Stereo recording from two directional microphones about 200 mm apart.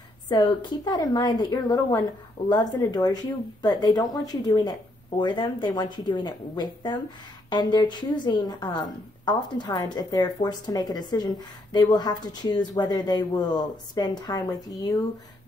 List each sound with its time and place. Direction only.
0.3 s speech: 20° left (ahead or behind)